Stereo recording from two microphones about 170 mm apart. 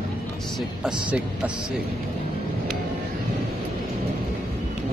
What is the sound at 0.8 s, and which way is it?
Speech, 5° right (ahead or behind).